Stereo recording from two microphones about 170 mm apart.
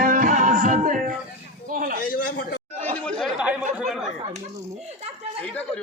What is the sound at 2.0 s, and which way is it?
Speech, 55° left (ahead or behind).